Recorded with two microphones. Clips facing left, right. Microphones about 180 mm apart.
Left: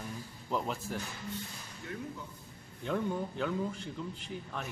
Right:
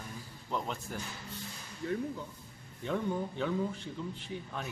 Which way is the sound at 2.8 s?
Centre (ahead or behind).